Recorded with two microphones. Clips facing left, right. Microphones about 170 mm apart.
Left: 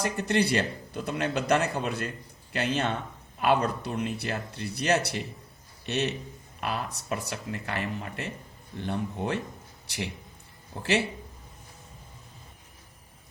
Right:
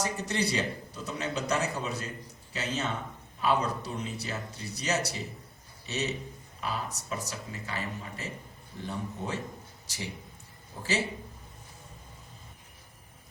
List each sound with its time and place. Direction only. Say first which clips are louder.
0.0 s a man's voice: left 5 dB; 60° left (ahead or behind)